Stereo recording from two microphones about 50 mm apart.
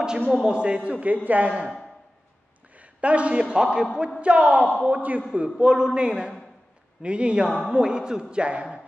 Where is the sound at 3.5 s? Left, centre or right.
Centre.